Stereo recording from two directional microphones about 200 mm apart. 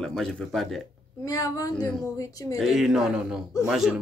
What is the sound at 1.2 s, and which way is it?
Speech, 15° left (ahead or behind).